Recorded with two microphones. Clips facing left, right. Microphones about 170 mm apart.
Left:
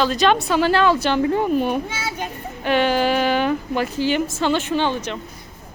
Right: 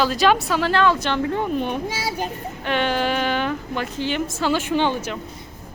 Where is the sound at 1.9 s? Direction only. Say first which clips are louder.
Right 2 dB; 35° right (ahead or behind).